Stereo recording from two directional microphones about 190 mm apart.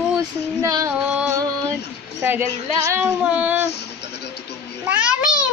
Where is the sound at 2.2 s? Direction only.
10° right (ahead or behind).